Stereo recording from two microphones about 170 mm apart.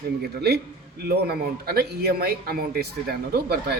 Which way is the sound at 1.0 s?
65° right (ahead or behind).